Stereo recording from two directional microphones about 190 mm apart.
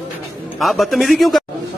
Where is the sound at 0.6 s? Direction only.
Centre (ahead or behind).